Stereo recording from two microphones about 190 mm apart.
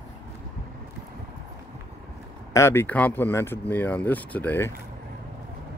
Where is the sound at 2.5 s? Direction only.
10° left (ahead or behind).